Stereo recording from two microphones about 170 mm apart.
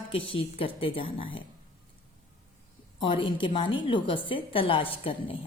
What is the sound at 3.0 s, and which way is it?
A woman's voice, 30° left (ahead or behind).